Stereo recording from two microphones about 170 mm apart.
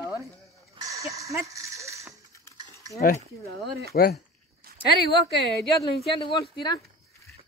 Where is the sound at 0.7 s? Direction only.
20° right (ahead or behind).